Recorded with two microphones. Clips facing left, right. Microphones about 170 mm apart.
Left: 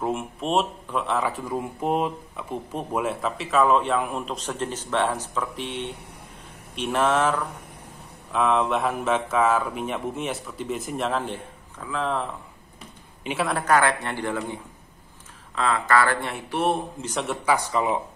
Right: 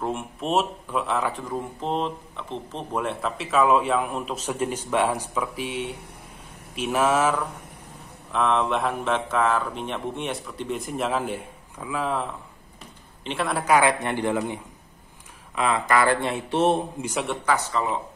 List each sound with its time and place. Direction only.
0.0 s a man's voice: centre (ahead or behind); by 16.8 s 25° right (ahead or behind)
17.0 s speech: 5° right (ahead or behind)
17.5 s speech: 15° left (ahead or behind)